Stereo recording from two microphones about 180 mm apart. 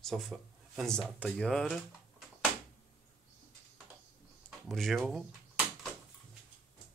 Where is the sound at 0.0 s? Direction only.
Centre (ahead or behind).